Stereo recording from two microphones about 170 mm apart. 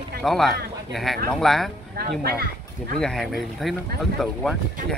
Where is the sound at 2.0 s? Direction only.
65° right (ahead or behind).